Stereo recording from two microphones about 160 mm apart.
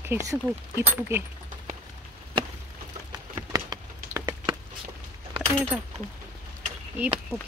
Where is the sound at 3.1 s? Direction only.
25° right (ahead or behind).